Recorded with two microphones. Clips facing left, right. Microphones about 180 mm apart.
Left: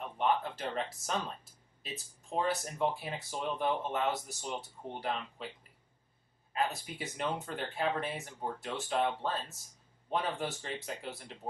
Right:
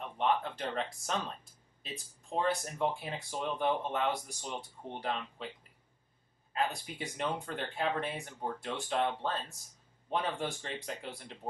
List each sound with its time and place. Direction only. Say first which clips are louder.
0.2 s a sound: even; 5° left (ahead or behind)
2.3 s speech: right 1 dB; 5° left (ahead or behind)
6.5 s speech: even; 5° left (ahead or behind)